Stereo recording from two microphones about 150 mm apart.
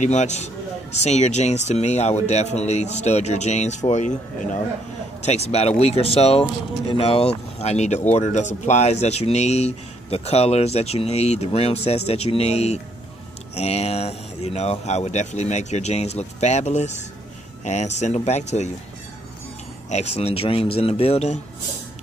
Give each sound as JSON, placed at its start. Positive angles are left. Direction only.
{"t": 0.0, "sound": "speech", "side_deg": 50}
{"t": 19.9, "sound": "speech", "side_deg": 45}